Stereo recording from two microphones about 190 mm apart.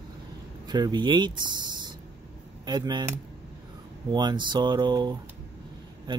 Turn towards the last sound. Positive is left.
turn(degrees=-20)  # may be behind; listen again after turning